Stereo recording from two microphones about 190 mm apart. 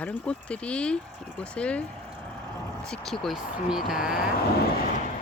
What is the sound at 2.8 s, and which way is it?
Speech, centre (ahead or behind).